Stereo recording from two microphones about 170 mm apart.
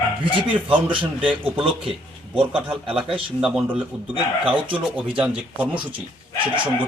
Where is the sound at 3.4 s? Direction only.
5° right (ahead or behind).